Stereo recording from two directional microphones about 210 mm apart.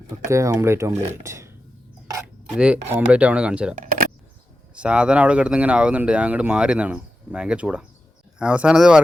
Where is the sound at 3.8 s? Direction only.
40° right (ahead or behind).